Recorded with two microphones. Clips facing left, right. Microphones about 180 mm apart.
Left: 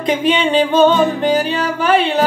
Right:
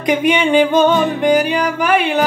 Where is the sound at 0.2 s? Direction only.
10° right (ahead or behind).